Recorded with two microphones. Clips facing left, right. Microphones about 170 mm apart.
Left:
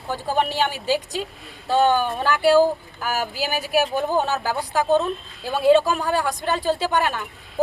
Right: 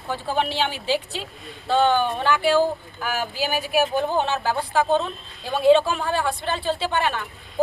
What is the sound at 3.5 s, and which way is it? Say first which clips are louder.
Speech: left 2 dB; 40° left (ahead or behind).